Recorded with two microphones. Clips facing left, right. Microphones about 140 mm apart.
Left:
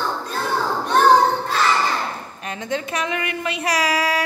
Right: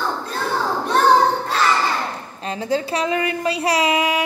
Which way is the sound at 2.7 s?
30° right (ahead or behind).